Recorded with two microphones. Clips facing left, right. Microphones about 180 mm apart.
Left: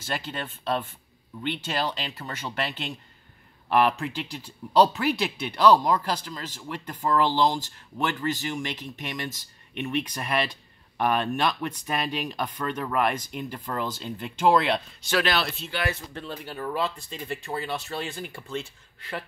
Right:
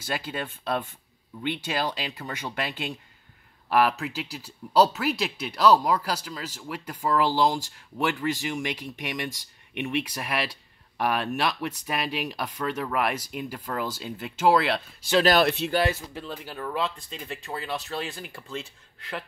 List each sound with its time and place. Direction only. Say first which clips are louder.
0.0 s speech: right 1 dB; 10° right (ahead or behind)
4.0 s speech: left 1 dB; 5° right (ahead or behind)
15.2 s speech: right 7 dB; 45° right (ahead or behind)
15.7 s speech: right 5 dB; 35° right (ahead or behind)
16.1 s speech: even; 5° right (ahead or behind)